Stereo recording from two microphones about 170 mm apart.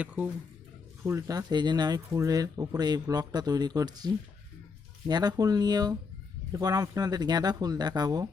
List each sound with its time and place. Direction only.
0.0 s speech: 10° right (ahead or behind)
1.0 s speech: 20° right (ahead or behind)